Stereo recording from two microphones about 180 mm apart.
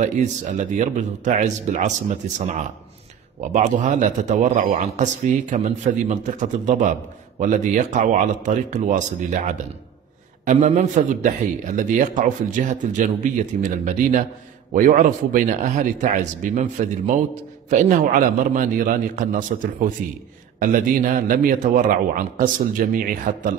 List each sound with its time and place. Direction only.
0.0 s a man's voice: 45° right (ahead or behind)